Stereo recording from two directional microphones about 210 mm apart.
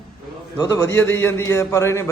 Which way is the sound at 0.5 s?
15° left (ahead or behind).